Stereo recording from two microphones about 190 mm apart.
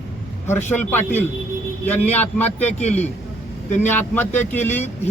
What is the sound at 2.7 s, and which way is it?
Speech, 35° left (ahead or behind).